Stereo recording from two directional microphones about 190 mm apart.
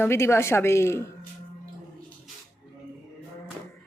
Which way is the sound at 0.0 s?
15° left (ahead or behind).